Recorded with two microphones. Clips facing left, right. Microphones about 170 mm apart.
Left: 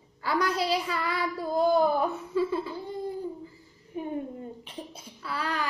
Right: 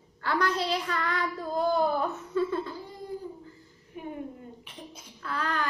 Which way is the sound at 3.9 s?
30° left (ahead or behind).